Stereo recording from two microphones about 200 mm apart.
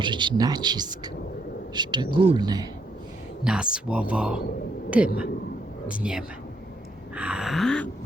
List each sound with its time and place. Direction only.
0.0 s speech: 25° right (ahead or behind)
3.4 s gasp: 5° right (ahead or behind)
4.9 s speech: 5° right (ahead or behind)
5.9 s gasp: 5° right (ahead or behind)